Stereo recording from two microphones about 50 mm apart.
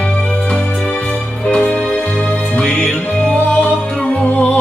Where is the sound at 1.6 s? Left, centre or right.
Left.